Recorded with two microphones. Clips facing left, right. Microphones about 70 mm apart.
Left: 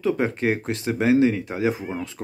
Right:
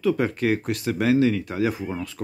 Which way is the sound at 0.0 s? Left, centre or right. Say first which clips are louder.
Even; left.